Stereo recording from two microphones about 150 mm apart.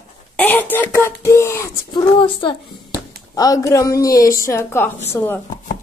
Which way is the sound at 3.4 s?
20° left (ahead or behind).